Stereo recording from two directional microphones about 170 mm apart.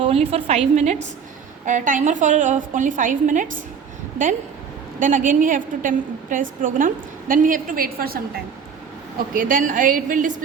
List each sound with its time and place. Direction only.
0.0 s a woman's voice: 35° right (ahead or behind)
1.6 s a woman's voice: 50° right (ahead or behind)
4.9 s a woman's voice: 50° right (ahead or behind)
9.3 s a woman's voice: 55° right (ahead or behind)